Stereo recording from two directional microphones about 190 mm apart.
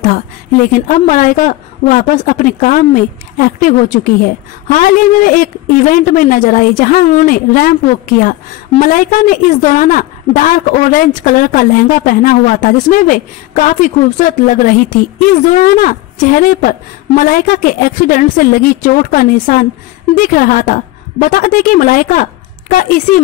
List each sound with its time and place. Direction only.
0.7 s a woman's voice: 45° left (ahead or behind)